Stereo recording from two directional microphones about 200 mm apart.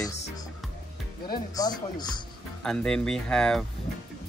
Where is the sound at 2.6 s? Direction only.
5° left (ahead or behind).